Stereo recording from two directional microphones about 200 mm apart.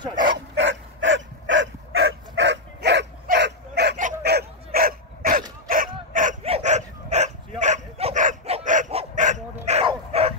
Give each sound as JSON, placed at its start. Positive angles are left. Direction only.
{"t": 0.6, "sound": "dog", "side_deg": -65}
{"t": 5.7, "sound": "a sound", "side_deg": -45}
{"t": 6.1, "sound": "dog", "side_deg": -35}